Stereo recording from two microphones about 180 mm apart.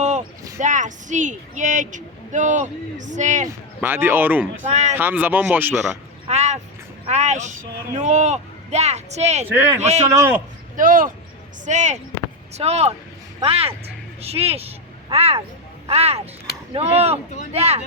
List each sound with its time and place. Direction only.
0.6 s a woman's voice: 45° right (ahead or behind)
3.8 s speech: 10° right (ahead or behind)
4.7 s a man's voice: 40° right (ahead or behind)
4.9 s speech: 10° right (ahead or behind)
6.2 s a sound: 40° right (ahead or behind)
7.1 s a man's voice: 40° right (ahead or behind)
9.6 s speech: 15° right (ahead or behind)
9.8 s a man's voice: 40° right (ahead or behind)
10.1 s speech: 15° right (ahead or behind)
10.8 s a woman's voice: 50° right (ahead or behind)